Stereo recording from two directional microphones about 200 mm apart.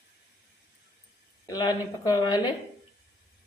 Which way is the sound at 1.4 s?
20° left (ahead or behind).